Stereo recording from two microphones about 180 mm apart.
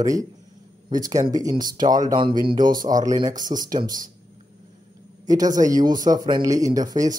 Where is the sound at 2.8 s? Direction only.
20° right (ahead or behind).